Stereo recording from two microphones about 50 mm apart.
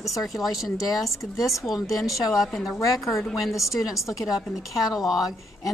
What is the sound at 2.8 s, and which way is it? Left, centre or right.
A woman's voice, left.